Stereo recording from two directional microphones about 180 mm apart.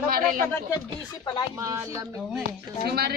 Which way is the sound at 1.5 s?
15° right (ahead or behind).